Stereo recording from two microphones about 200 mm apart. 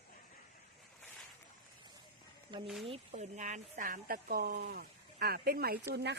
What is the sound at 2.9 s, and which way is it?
Speech, 35° right (ahead or behind).